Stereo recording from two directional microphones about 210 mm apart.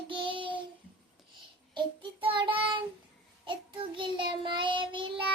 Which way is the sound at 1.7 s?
25° right (ahead or behind).